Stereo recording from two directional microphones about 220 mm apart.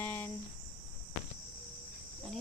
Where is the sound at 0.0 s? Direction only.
10° left (ahead or behind).